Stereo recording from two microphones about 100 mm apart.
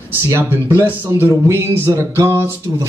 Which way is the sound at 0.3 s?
20° right (ahead or behind).